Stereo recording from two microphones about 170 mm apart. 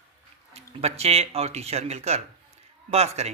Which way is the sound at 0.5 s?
40° right (ahead or behind).